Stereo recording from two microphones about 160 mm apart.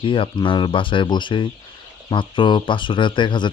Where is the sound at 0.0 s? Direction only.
30° left (ahead or behind).